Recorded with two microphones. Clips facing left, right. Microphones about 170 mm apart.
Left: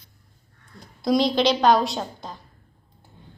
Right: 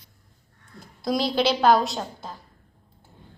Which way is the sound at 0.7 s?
Centre (ahead or behind).